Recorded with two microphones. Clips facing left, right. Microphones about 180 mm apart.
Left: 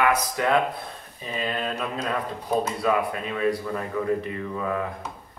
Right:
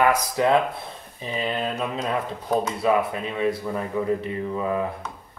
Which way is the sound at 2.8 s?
25° right (ahead or behind).